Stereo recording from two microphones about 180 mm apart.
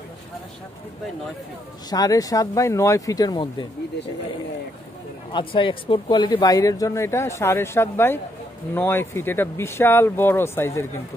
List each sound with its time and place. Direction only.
1.9 s speech: 20° left (ahead or behind)
5.3 s speech: 30° left (ahead or behind)